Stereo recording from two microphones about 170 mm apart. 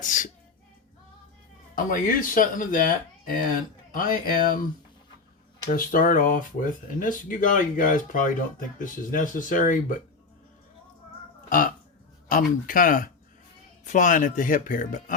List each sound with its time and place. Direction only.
0.0 s sneeze: 50° left (ahead or behind)
1.7 s speech: 55° left (ahead or behind)
3.9 s speech: 55° left (ahead or behind)
5.6 s speech: 55° left (ahead or behind)
11.4 s speech: 55° left (ahead or behind)